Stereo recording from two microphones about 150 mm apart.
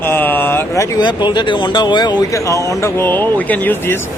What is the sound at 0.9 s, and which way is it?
Speech, 30° left (ahead or behind).